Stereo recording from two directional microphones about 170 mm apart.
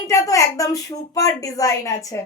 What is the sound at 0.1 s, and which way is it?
A woman's voice, 20° left (ahead or behind).